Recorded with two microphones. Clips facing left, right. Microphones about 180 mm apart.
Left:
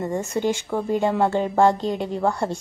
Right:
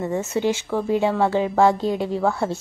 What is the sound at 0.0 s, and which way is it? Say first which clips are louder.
A woman's voice: right 1 dB; 5° right (ahead or behind).